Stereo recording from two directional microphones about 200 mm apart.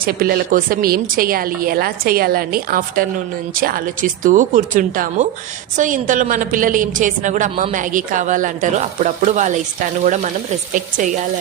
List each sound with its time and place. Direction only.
0.0 s a woman's voice: 50° right (ahead or behind)